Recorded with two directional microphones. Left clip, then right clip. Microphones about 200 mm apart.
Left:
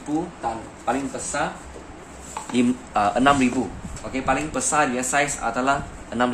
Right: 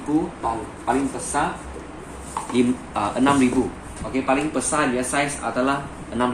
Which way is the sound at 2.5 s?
55° left (ahead or behind).